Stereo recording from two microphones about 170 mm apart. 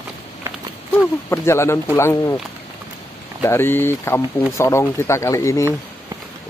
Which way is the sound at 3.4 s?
15° left (ahead or behind).